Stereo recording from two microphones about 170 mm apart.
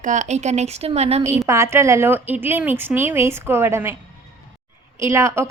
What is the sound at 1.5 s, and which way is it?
A woman's voice, 15° right (ahead or behind).